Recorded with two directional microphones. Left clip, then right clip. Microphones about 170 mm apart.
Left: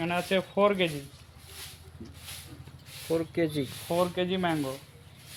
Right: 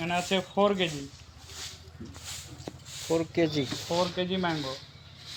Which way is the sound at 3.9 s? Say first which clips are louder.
Left 2 dB; 55° left (ahead or behind).